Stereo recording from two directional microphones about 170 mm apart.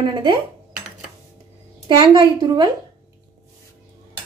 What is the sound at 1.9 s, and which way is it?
Speech, 30° right (ahead or behind).